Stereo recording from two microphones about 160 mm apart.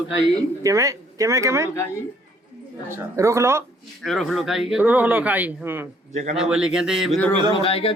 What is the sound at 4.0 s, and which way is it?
Speech, centre (ahead or behind).